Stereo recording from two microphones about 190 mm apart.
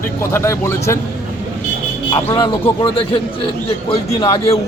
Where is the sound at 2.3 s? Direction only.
25° left (ahead or behind).